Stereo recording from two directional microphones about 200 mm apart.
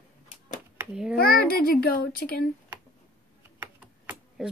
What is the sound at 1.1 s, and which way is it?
A child's voice, 50° left (ahead or behind).